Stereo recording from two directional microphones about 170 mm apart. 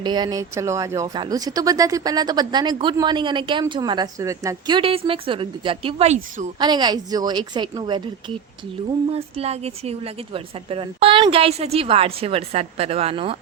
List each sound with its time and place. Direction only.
0.0 s speech: 25° right (ahead or behind)
9.1 s a woman's voice: 35° right (ahead or behind)